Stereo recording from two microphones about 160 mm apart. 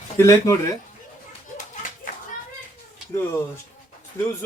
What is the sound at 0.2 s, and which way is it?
Speech, 20° left (ahead or behind).